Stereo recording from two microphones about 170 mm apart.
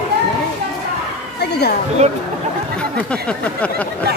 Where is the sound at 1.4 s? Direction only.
75° left (ahead or behind).